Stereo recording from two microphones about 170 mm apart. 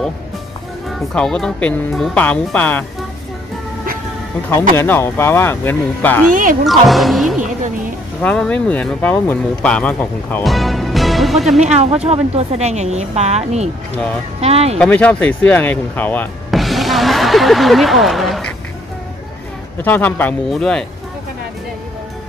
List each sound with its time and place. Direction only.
0.8 s speech: centre (ahead or behind)
4.7 s speech: 10° left (ahead or behind)
6.6 s speech: centre (ahead or behind)
7.3 s music: 45° right (ahead or behind)
8.2 s speech: 5° left (ahead or behind)
11.6 s speech: 40° right (ahead or behind)
14.8 s speech: 10° left (ahead or behind)
16.4 s music: centre (ahead or behind)
19.8 s speech: 10° left (ahead or behind)